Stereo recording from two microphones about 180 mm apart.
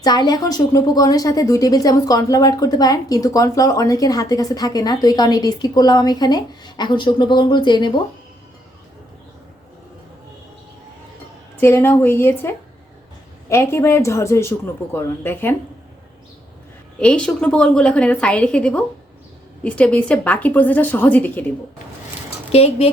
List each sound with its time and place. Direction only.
0.0 s speech: 20° left (ahead or behind)
11.6 s a woman's voice: 15° left (ahead or behind)
17.0 s a woman's voice: 5° left (ahead or behind)
22.5 s speech: 35° left (ahead or behind)